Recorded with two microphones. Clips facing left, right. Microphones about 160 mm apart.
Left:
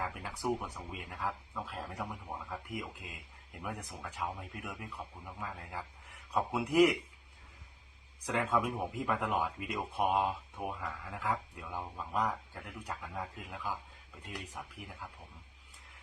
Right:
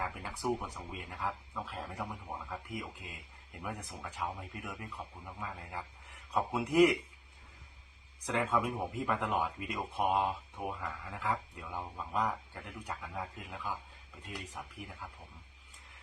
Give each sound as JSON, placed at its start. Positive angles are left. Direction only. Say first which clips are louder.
{"t": 0.2, "sound": "speech", "louder": "even", "side_deg": 0}
{"t": 8.3, "sound": "speech", "louder": "even", "side_deg": 0}